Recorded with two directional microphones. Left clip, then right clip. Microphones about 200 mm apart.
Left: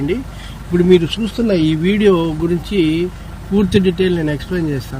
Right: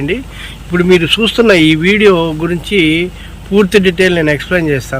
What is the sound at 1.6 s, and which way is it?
Speech, 5° left (ahead or behind).